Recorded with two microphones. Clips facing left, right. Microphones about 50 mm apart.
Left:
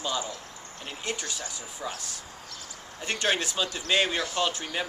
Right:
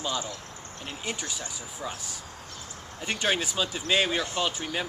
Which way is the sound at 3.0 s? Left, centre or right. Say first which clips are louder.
Even; centre.